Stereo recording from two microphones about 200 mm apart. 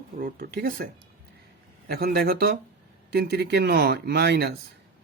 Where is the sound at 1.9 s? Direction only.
50° right (ahead or behind).